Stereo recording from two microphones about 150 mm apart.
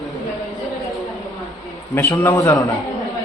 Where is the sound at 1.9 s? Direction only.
15° left (ahead or behind).